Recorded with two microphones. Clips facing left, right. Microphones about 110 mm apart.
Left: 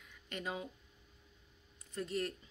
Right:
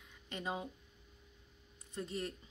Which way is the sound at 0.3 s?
25° right (ahead or behind).